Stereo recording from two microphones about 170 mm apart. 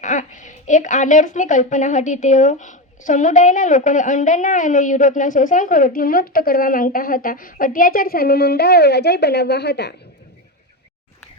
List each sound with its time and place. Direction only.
0.0 s a woman's voice: 45° left (ahead or behind); by 9.9 s 75° left (ahead or behind)